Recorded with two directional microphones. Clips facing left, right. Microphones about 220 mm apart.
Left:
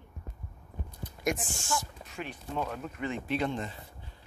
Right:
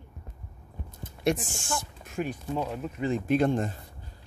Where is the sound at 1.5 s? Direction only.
50° right (ahead or behind).